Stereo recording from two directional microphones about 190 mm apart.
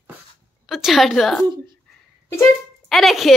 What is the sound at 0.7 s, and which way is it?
Speech, centre (ahead or behind).